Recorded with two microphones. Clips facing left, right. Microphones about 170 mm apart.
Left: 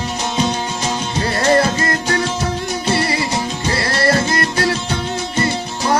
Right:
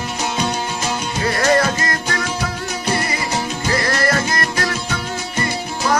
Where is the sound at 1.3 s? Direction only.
30° left (ahead or behind).